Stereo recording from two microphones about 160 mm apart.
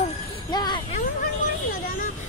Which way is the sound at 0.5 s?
25° left (ahead or behind).